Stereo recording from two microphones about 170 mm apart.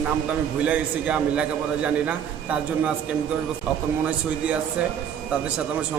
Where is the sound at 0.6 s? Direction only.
10° right (ahead or behind).